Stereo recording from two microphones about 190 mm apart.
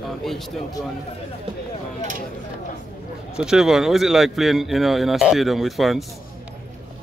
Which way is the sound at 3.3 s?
5° right (ahead or behind).